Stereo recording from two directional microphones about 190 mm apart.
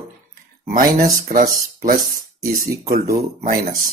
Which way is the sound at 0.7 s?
50° right (ahead or behind).